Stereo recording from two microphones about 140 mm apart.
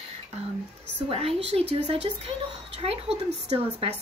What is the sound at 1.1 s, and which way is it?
Speech, 45° right (ahead or behind).